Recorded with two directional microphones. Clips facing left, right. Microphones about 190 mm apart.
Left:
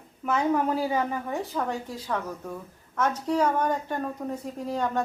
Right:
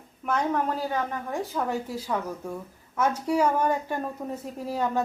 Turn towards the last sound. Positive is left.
turn(degrees=-5)  # may be behind; listen again after turning